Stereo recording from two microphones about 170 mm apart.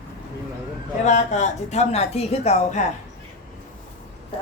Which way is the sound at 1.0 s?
45° left (ahead or behind).